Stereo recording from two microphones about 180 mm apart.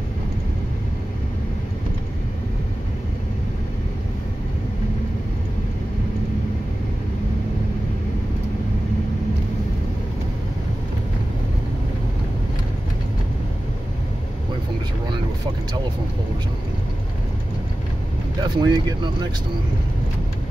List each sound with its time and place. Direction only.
18.4 s speech: 25° right (ahead or behind)